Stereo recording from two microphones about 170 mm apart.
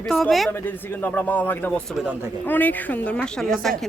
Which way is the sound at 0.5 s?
10° left (ahead or behind).